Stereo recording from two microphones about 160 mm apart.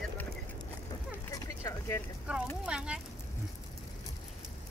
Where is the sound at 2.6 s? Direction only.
5° right (ahead or behind).